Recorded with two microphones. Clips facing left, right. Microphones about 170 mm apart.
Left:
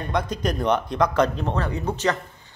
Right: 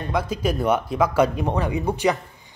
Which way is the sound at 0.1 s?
5° right (ahead or behind).